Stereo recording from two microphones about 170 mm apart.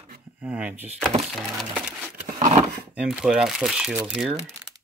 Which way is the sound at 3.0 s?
5° right (ahead or behind).